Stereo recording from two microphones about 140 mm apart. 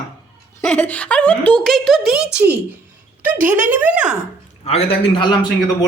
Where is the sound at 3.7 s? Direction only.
10° right (ahead or behind).